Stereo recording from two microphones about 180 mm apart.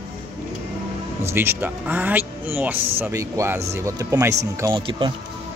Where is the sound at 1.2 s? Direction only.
15° right (ahead or behind).